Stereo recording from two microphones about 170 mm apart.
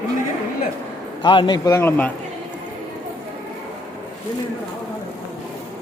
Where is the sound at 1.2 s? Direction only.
30° left (ahead or behind); by 2.1 s 10° left (ahead or behind).